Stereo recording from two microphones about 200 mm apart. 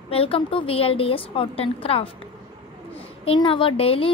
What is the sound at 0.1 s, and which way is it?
A woman's voice, 30° left (ahead or behind).